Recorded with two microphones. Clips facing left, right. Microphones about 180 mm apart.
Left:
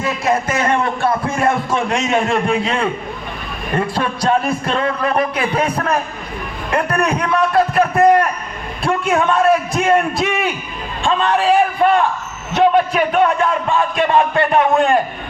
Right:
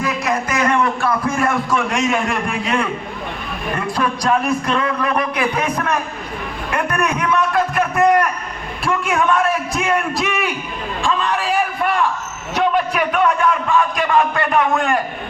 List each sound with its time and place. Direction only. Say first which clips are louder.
0.0 s a man's voice: left 3 dB; 30° left (ahead or behind)